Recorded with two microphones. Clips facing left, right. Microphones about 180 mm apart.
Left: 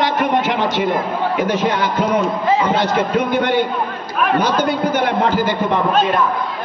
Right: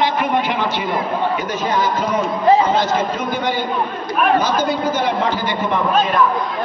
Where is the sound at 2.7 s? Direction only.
60° left (ahead or behind).